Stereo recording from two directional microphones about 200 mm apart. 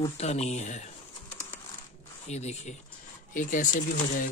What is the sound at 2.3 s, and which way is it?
Speech, 35° left (ahead or behind).